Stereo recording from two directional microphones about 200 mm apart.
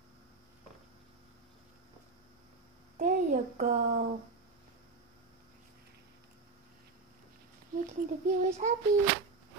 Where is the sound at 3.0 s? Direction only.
40° right (ahead or behind).